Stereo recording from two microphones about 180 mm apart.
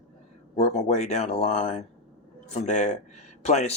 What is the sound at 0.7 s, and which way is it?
Speech, 40° left (ahead or behind).